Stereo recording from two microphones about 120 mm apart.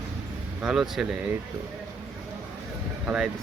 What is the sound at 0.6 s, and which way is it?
Speech, 5° right (ahead or behind).